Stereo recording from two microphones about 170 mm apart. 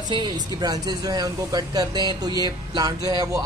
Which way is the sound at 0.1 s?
25° right (ahead or behind).